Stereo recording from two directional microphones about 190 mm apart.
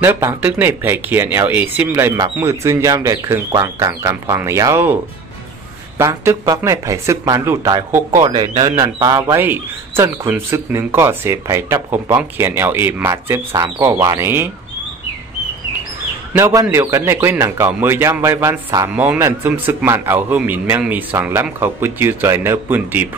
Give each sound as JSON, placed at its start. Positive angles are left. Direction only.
{"t": 0.0, "sound": "a man's voice", "side_deg": -10}
{"t": 5.9, "sound": "a man's voice", "side_deg": -15}
{"t": 16.3, "sound": "a man's voice", "side_deg": -15}